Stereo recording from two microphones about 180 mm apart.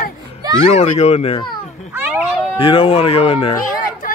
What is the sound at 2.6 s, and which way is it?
Speech, 30° left (ahead or behind).